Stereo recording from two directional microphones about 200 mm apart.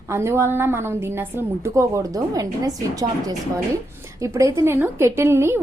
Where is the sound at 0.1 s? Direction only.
15° right (ahead or behind).